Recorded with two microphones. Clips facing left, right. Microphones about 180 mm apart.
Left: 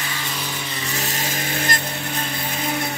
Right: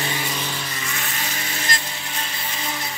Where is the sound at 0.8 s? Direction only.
35° left (ahead or behind).